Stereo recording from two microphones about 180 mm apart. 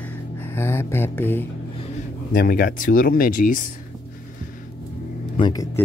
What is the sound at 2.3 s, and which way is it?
Speech, 50° left (ahead or behind).